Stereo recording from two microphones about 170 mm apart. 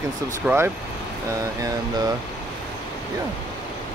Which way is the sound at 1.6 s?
20° right (ahead or behind).